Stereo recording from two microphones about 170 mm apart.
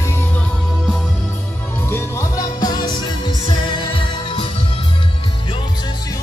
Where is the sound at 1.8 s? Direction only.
15° left (ahead or behind); by 4.5 s 30° left (ahead or behind).